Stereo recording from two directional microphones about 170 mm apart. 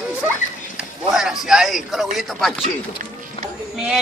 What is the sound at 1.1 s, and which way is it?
Speech, 5° right (ahead or behind).